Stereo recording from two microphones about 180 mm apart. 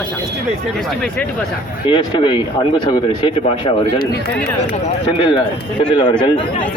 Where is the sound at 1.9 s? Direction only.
30° left (ahead or behind).